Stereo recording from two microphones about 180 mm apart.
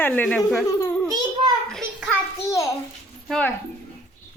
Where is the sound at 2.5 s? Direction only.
15° left (ahead or behind).